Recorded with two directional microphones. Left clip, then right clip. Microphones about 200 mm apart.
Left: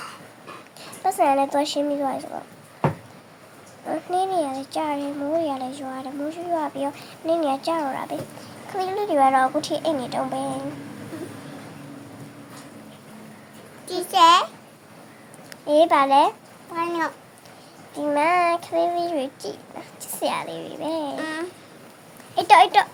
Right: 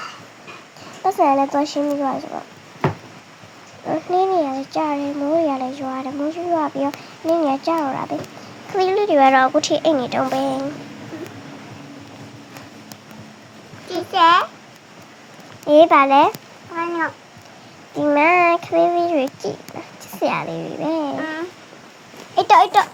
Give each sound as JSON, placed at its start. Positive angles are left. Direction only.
{"t": 1.2, "sound": "speech", "side_deg": -10}
{"t": 1.5, "sound": "speech", "side_deg": 10}
{"t": 2.0, "sound": "speech", "side_deg": -5}
{"t": 3.8, "sound": "child singing", "side_deg": -15}
{"t": 5.4, "sound": "speech", "side_deg": -15}
{"t": 8.7, "sound": "speech", "side_deg": -20}
{"t": 13.8, "sound": "a sound", "side_deg": 0}
{"t": 15.6, "sound": "speech", "side_deg": -10}
{"t": 16.7, "sound": "speech", "side_deg": 5}
{"t": 17.9, "sound": "child singing", "side_deg": -15}
{"t": 21.2, "sound": "a sound", "side_deg": 15}
{"t": 22.4, "sound": "speech", "side_deg": -10}